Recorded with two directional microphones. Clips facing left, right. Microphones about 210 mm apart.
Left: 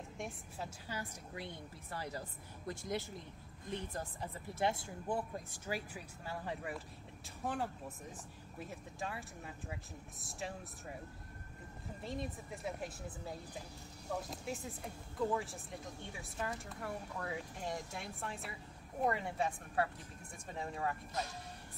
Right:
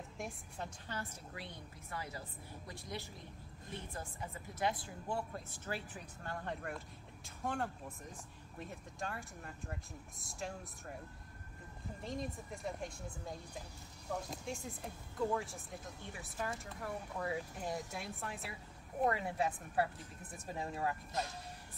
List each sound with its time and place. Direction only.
0.2 s a woman's voice: 5° left (ahead or behind)
1.9 s a woman's voice: 35° left (ahead or behind)
2.6 s speech: 45° left (ahead or behind)
3.9 s speech: 35° left (ahead or behind); by 11.0 s centre (ahead or behind)
12.0 s speech: centre (ahead or behind)